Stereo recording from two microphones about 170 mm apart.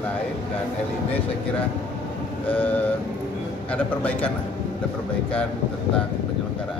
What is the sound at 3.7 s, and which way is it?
Speech, 5° left (ahead or behind).